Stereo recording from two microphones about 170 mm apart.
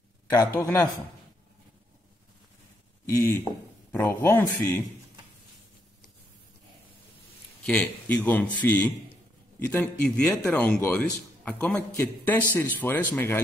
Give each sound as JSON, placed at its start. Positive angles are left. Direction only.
{"t": 0.3, "sound": "a man's voice", "side_deg": 20}
{"t": 3.1, "sound": "a man's voice", "side_deg": 15}
{"t": 7.6, "sound": "a man's voice", "side_deg": 5}